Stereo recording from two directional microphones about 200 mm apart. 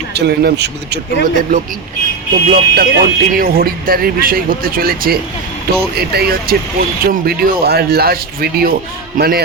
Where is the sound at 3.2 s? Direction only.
45° right (ahead or behind).